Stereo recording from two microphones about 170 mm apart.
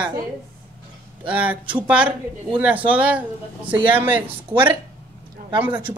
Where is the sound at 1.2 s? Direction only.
10° right (ahead or behind).